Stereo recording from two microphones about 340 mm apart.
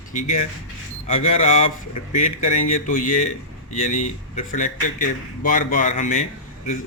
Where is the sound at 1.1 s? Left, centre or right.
Centre.